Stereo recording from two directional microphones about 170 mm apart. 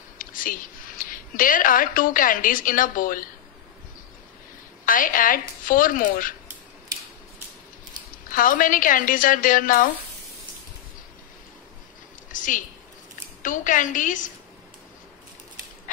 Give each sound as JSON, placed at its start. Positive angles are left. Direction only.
{"t": 0.2, "sound": "a woman's voice", "side_deg": 55}
{"t": 4.8, "sound": "a woman's voice", "side_deg": 55}
{"t": 8.3, "sound": "a woman's voice", "side_deg": 55}
{"t": 12.3, "sound": "a sound", "side_deg": 50}
{"t": 13.4, "sound": "a woman's voice", "side_deg": 50}